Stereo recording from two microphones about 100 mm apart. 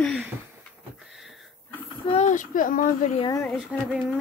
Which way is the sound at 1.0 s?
5° right (ahead or behind).